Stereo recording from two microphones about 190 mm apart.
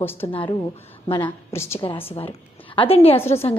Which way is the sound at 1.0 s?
25° left (ahead or behind).